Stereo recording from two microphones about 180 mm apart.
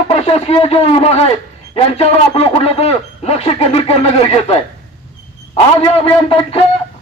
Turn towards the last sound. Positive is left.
turn(degrees=30)  # may be behind; listen again after turning